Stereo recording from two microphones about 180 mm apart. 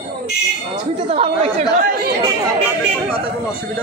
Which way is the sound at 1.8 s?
55° right (ahead or behind).